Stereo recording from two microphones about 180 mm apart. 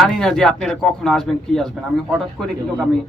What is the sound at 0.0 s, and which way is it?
A man's voice, centre (ahead or behind).